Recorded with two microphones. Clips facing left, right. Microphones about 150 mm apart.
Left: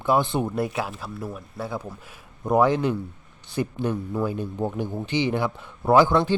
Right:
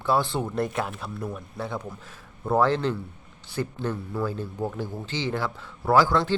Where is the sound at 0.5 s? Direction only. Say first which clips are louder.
Left 1 dB; 5° left (ahead or behind).